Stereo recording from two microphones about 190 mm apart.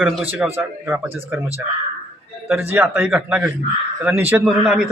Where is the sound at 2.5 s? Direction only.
10° right (ahead or behind).